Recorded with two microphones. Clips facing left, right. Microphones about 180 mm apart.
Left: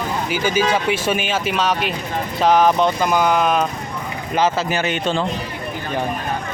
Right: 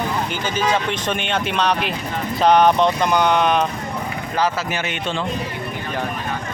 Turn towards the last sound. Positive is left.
turn(degrees=40)  # may be behind; listen again after turning